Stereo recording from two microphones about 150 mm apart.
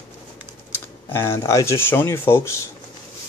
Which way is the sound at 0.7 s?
15° left (ahead or behind).